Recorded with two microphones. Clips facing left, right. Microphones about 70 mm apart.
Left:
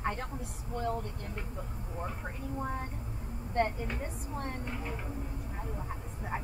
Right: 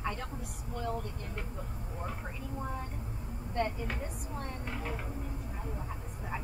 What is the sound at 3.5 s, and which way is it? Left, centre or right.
A woman's voice, left.